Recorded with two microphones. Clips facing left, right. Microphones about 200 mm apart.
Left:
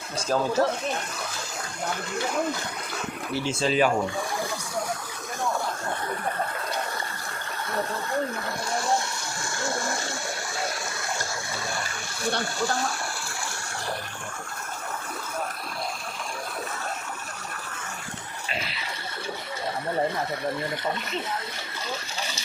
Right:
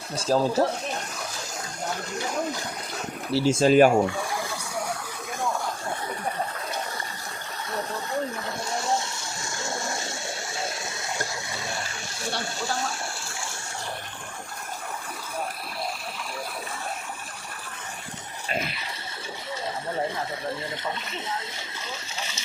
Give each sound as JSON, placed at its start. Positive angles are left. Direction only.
{"t": 0.2, "sound": "speech", "side_deg": -30}
{"t": 3.3, "sound": "speech", "side_deg": -45}
{"t": 9.6, "sound": "water", "side_deg": -20}
{"t": 18.4, "sound": "a sound", "side_deg": -50}